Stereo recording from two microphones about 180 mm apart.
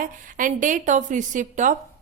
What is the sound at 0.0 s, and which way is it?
A woman's voice, 50° right (ahead or behind).